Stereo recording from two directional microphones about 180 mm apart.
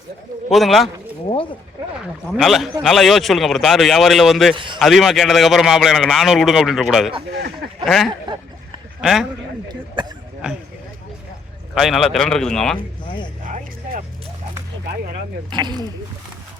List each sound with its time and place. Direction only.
0.5 s a man's voice: centre (ahead or behind)
2.3 s a man's voice: centre (ahead or behind)
4.5 s speech: 25° right (ahead or behind)
4.8 s a man's voice: centre (ahead or behind)
9.6 s speech: 25° right (ahead or behind)
11.7 s a man's voice: centre (ahead or behind)
13.1 s speech: 25° left (ahead or behind)
15.4 s speech: 25° right (ahead or behind)